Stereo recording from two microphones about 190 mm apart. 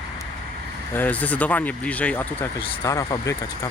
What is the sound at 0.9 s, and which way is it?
Speech, 10° left (ahead or behind).